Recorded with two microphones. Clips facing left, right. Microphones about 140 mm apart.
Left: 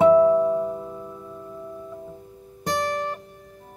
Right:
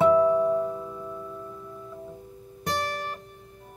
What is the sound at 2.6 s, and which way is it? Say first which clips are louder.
Music: left 5 dB; 20° left (ahead or behind).